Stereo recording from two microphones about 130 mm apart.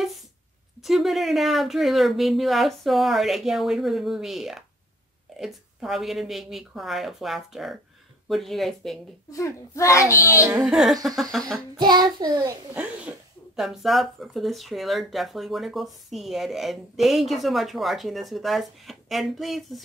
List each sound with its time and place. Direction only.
0.8 s speech: centre (ahead or behind)
9.3 s a child's voice: 25° left (ahead or behind)
10.4 s speech: 5° right (ahead or behind)
11.8 s child singing: 35° right (ahead or behind)
13.6 s speech: centre (ahead or behind)